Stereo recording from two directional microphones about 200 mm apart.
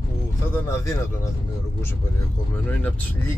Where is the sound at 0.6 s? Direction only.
15° left (ahead or behind).